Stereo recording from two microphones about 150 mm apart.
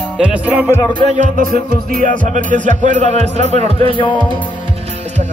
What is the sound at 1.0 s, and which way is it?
Music, 55° right (ahead or behind).